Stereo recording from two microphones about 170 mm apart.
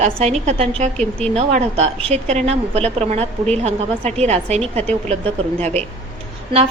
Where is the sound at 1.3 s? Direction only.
40° right (ahead or behind).